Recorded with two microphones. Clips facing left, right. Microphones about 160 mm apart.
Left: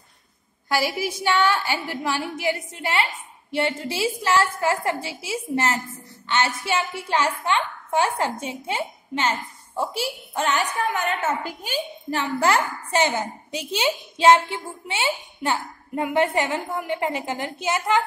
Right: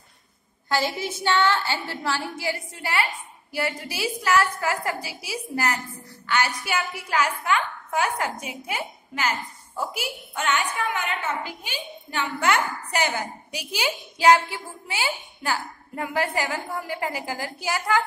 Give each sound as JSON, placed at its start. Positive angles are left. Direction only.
{"t": 0.7, "sound": "a woman's voice", "side_deg": 10}